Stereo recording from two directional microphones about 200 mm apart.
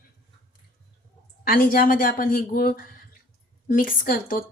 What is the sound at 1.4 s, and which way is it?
Speech, 45° left (ahead or behind).